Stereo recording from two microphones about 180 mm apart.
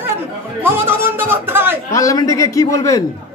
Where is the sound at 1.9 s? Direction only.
15° left (ahead or behind).